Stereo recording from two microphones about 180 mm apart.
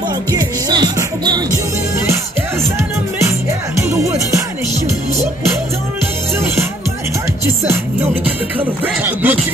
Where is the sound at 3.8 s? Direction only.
15° right (ahead or behind).